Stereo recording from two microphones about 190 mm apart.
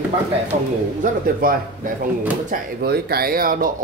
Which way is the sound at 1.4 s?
50° right (ahead or behind).